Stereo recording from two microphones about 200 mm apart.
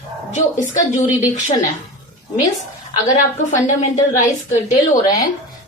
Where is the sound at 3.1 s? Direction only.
40° left (ahead or behind).